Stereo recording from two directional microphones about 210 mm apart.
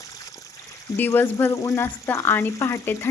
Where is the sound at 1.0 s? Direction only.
10° left (ahead or behind).